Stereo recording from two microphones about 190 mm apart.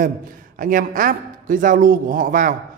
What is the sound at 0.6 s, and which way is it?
A man's voice, 45° right (ahead or behind).